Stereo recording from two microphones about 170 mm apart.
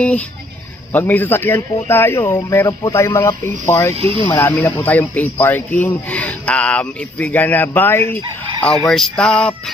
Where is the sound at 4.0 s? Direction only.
35° right (ahead or behind).